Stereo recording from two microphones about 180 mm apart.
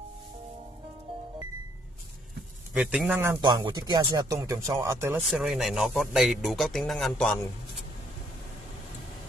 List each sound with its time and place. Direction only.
2.8 s speech: 5° right (ahead or behind)
3.3 s speech: 25° right (ahead or behind)
5.1 s speech: centre (ahead or behind)